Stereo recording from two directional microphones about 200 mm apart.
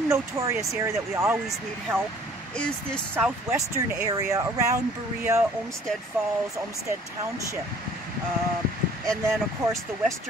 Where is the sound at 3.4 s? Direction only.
15° right (ahead or behind).